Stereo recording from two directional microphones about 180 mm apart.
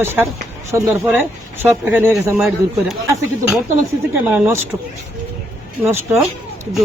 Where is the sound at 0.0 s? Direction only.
10° right (ahead or behind).